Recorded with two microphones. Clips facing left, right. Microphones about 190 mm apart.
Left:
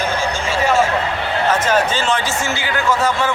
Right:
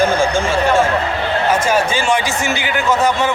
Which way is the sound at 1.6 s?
10° right (ahead or behind).